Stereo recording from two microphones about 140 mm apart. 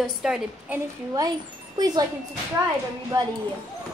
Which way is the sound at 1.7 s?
30° right (ahead or behind).